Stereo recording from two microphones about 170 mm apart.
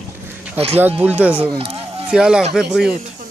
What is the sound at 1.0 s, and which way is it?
Speech, 10° right (ahead or behind).